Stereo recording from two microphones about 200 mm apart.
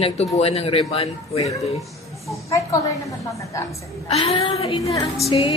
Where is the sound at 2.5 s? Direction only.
15° left (ahead or behind).